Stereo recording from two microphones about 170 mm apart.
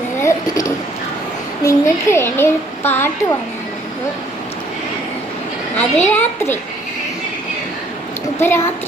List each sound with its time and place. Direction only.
0.2 s a sound: 15° left (ahead or behind)
1.6 s speech: 15° left (ahead or behind)
5.7 s speech: 10° left (ahead or behind)
8.4 s speech: 15° left (ahead or behind)